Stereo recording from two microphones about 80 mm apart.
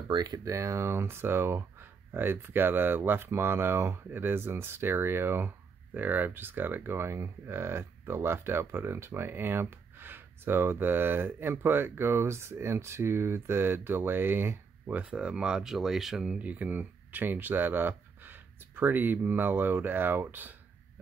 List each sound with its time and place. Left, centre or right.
0.1 s speech: right
0.5 s speech: right
15.0 s speech: centre